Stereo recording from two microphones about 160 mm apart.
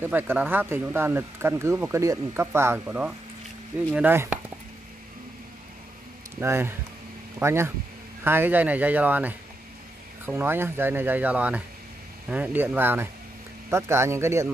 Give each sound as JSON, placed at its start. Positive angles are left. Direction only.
{"t": 0.0, "sound": "speech", "side_deg": -10}
{"t": 6.4, "sound": "speech", "side_deg": -15}